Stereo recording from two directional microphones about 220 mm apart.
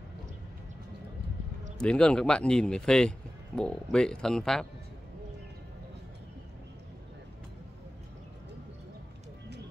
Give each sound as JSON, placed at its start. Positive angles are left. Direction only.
{"t": 1.8, "sound": "a man's voice", "side_deg": 5}